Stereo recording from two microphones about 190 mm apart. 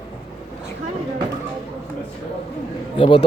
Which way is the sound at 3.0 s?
25° left (ahead or behind).